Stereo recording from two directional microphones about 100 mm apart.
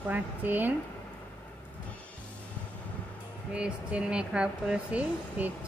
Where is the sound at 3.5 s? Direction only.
10° right (ahead or behind).